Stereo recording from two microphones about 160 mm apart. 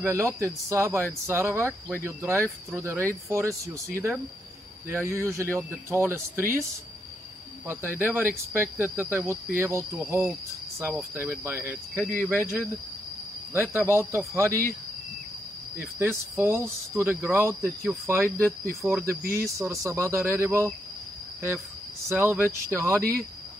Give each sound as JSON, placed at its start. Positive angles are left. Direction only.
{"t": 0.0, "sound": "speech", "side_deg": -15}
{"t": 7.6, "sound": "speech", "side_deg": -15}
{"t": 12.1, "sound": "speech", "side_deg": 15}
{"t": 13.5, "sound": "speech", "side_deg": -15}
{"t": 15.8, "sound": "speech", "side_deg": -15}
{"t": 22.1, "sound": "speech", "side_deg": -15}